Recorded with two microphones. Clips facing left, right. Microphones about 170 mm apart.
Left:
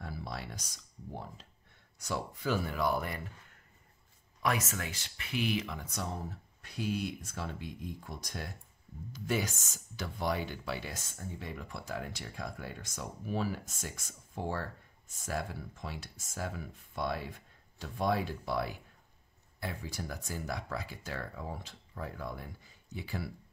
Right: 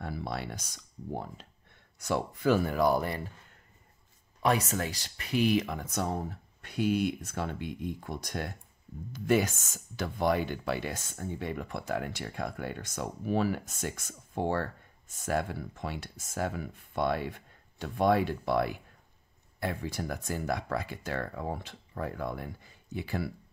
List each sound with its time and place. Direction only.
0.0 s speech: 60° right (ahead or behind)
2.0 s speech: 55° right (ahead or behind); by 3.2 s 35° right (ahead or behind)
4.4 s speech: 35° right (ahead or behind); by 23.3 s 60° right (ahead or behind)